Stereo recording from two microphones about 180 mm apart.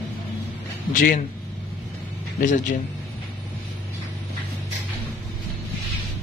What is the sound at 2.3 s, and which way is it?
Speech, 45° left (ahead or behind).